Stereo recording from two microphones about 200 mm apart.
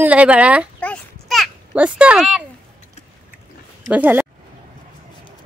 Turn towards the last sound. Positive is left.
turn(degrees=-10)  # may be behind; listen again after turning